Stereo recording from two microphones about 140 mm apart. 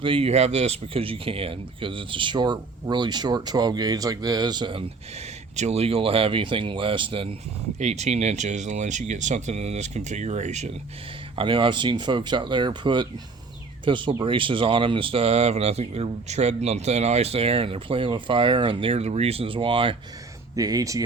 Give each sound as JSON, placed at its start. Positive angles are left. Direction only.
{"t": 0.0, "sound": "speech", "side_deg": -40}
{"t": 5.5, "sound": "speech", "side_deg": -50}
{"t": 7.8, "sound": "speech", "side_deg": -55}
{"t": 11.3, "sound": "speech", "side_deg": -40}
{"t": 20.6, "sound": "speech", "side_deg": -25}